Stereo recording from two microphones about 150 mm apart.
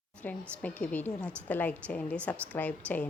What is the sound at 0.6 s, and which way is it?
A woman's voice, 10° left (ahead or behind).